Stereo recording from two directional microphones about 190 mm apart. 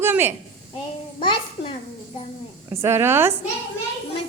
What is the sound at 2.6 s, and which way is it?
Speech, 15° right (ahead or behind).